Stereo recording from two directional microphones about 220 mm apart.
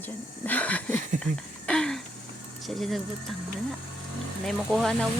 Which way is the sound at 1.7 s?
5° left (ahead or behind).